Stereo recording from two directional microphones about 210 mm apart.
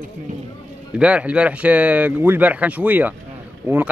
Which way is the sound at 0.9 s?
5° right (ahead or behind).